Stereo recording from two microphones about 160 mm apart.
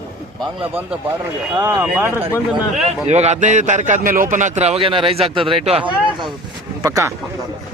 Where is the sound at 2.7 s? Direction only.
45° right (ahead or behind).